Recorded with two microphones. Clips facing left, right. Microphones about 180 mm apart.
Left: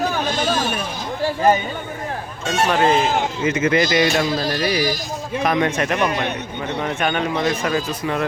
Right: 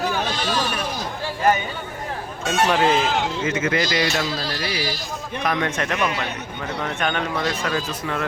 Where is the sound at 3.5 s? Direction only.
20° left (ahead or behind).